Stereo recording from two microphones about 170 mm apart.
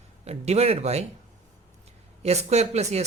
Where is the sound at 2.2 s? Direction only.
40° right (ahead or behind).